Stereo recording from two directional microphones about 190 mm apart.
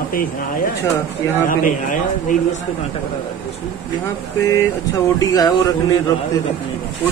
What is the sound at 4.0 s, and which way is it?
Speech, 15° left (ahead or behind).